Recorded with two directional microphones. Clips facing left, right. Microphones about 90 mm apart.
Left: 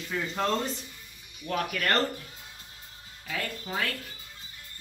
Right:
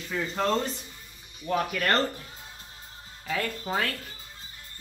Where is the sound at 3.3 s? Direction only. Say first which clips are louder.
Right 5 dB; 35° right (ahead or behind).